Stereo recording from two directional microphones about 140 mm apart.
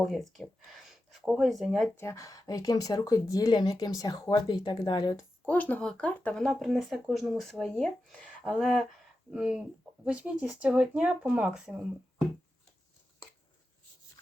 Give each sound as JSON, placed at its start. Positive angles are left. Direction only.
{"t": 0.0, "sound": "speech", "side_deg": 0}
{"t": 2.0, "sound": "speech", "side_deg": 20}
{"t": 5.5, "sound": "speech", "side_deg": 10}